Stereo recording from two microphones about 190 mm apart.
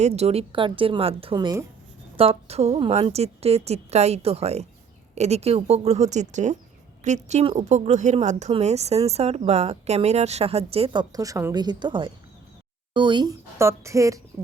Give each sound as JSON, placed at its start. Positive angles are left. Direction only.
{"t": 0.0, "sound": "a woman's voice", "side_deg": -35}